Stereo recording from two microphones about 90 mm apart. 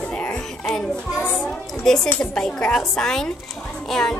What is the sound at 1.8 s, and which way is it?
A woman's voice, 5° left (ahead or behind).